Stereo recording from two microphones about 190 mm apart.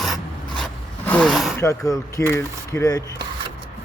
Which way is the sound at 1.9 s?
15° left (ahead or behind).